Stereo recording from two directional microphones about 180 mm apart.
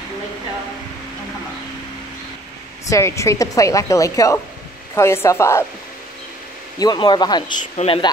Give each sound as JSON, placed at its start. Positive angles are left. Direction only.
{"t": 2.9, "sound": "a woman's voice", "side_deg": 15}
{"t": 6.8, "sound": "speech", "side_deg": 25}